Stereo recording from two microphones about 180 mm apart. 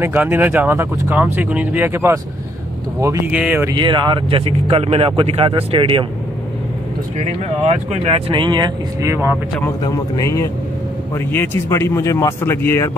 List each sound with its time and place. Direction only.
0.0 s speech: 10° right (ahead or behind)
3.7 s speech: 25° right (ahead or behind)
7.2 s speech: 35° right (ahead or behind); by 9.4 s 15° right (ahead or behind)
9.8 s a man's voice: 20° left (ahead or behind)